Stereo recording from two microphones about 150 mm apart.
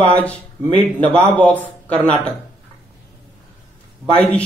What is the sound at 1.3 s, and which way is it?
Speech, 10° left (ahead or behind).